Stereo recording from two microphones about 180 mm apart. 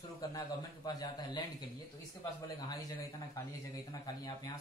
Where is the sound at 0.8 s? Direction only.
25° left (ahead or behind).